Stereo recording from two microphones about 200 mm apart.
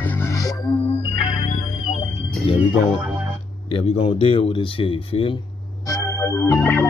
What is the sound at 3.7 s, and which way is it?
Speech, 30° left (ahead or behind).